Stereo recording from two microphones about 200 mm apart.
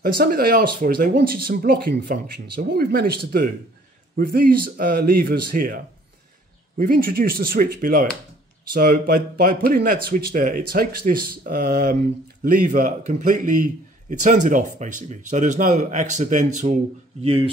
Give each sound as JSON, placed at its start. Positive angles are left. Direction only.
{"t": 0.0, "sound": "speech", "side_deg": -50}
{"t": 4.2, "sound": "speech", "side_deg": -45}
{"t": 6.8, "sound": "a man's voice", "side_deg": -45}